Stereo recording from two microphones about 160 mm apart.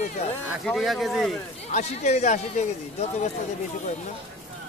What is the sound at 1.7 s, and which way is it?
Speech, 45° left (ahead or behind).